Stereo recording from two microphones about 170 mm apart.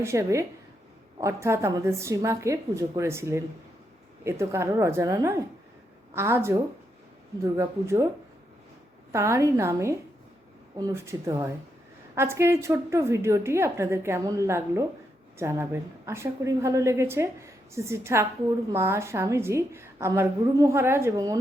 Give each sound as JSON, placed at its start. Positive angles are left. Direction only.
{"t": 0.0, "sound": "a woman's voice", "side_deg": -15}
{"t": 9.1, "sound": "a woman's voice", "side_deg": -15}